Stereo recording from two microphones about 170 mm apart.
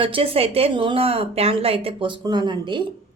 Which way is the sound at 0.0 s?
30° right (ahead or behind).